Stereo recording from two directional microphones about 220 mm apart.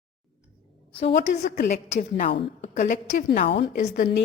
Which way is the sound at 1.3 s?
50° left (ahead or behind).